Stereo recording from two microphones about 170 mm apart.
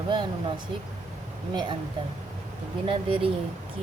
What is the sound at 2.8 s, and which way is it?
Speech, 30° right (ahead or behind).